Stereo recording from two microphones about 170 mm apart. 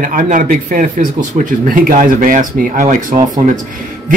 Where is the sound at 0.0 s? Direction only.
50° right (ahead or behind).